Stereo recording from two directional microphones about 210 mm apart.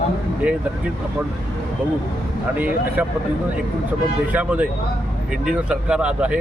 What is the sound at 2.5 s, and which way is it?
Speech, 10° right (ahead or behind).